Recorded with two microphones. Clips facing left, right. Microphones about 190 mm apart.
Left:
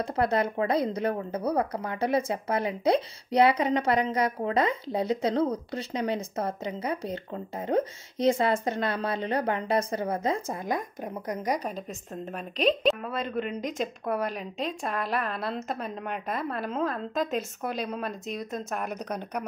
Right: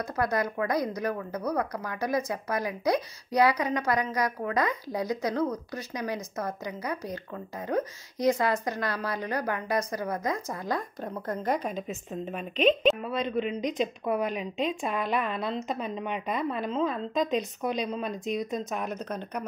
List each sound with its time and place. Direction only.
0.0 s speech: 30° left (ahead or behind)
12.1 s a woman's voice: centre (ahead or behind)